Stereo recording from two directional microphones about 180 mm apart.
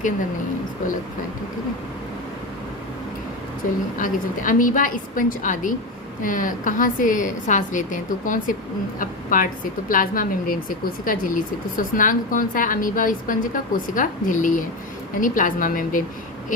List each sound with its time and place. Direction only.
3.9 s speech: 50° left (ahead or behind)